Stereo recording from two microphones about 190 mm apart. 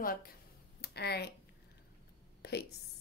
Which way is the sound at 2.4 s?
55° left (ahead or behind).